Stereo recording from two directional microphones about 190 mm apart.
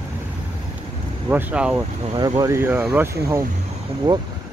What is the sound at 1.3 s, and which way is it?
Speech, 10° right (ahead or behind).